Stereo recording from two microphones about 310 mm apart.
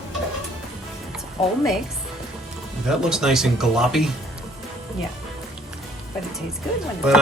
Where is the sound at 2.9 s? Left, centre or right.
Centre.